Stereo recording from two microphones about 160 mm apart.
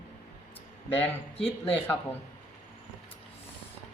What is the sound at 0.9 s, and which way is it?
Speech, 10° left (ahead or behind).